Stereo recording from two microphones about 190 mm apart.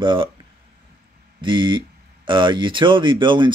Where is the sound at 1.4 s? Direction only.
25° right (ahead or behind).